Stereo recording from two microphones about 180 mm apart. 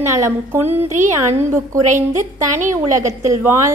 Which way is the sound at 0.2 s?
10° right (ahead or behind).